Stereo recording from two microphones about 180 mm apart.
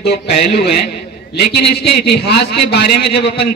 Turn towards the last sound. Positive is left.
turn(degrees=70)  # may be behind; listen again after turning